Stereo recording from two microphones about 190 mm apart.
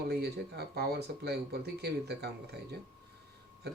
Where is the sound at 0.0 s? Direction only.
55° right (ahead or behind).